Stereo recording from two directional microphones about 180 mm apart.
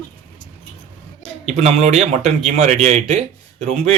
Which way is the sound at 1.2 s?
35° right (ahead or behind).